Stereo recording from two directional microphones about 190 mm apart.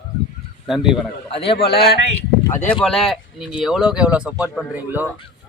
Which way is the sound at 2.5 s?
15° left (ahead or behind).